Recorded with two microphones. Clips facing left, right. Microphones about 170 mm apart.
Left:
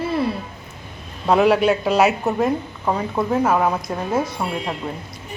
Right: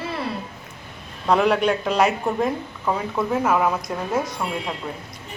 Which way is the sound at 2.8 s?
20° left (ahead or behind).